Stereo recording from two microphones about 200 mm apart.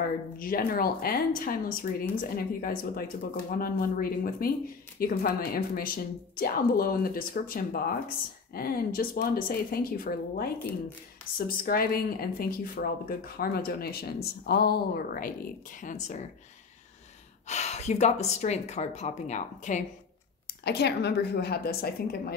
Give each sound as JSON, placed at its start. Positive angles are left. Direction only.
{"t": 0.4, "sound": "speech", "side_deg": 45}
{"t": 17.5, "sound": "speech", "side_deg": 35}
{"t": 20.6, "sound": "speech", "side_deg": 55}